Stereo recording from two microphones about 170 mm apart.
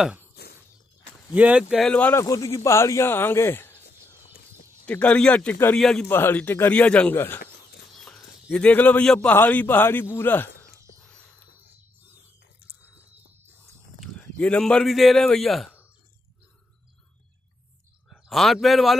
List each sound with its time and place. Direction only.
0.4 s a sound: 70° left (ahead or behind)
1.3 s a man's voice: 10° right (ahead or behind); by 2.2 s 10° left (ahead or behind)
2.2 s a man's voice: 20° left (ahead or behind)
4.8 s a man's voice: 10° left (ahead or behind)
11.0 s a sound: 5° left (ahead or behind)
14.4 s a man's voice: 5° left (ahead or behind)
18.1 s a man's voice: centre (ahead or behind)